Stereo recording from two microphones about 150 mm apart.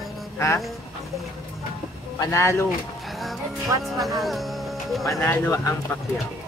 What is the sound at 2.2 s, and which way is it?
Speech, 20° left (ahead or behind).